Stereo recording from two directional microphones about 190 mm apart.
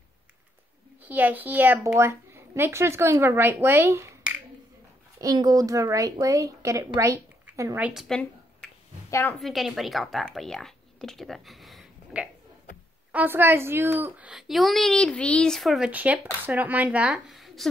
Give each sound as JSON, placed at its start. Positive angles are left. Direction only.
{"t": 1.0, "sound": "a woman's voice", "side_deg": -10}
{"t": 9.4, "sound": "a woman's voice", "side_deg": 0}